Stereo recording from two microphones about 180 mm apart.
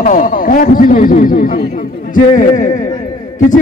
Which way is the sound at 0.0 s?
50° left (ahead or behind).